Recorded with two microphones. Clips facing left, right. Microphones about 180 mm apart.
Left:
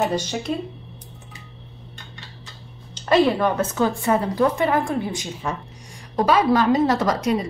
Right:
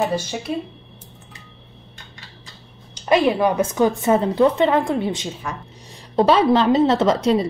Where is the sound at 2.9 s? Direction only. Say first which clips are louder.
Even; 15° right (ahead or behind).